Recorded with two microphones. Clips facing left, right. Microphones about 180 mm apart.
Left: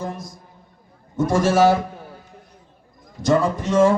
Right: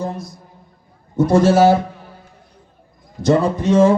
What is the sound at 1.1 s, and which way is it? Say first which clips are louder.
Speech: right 5 dB; 30° right (ahead or behind).